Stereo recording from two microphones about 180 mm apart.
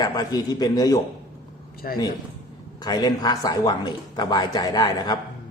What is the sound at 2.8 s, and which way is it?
A man's voice, 20° left (ahead or behind).